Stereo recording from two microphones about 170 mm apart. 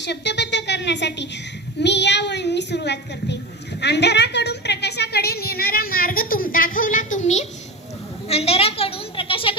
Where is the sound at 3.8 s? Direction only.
80° left.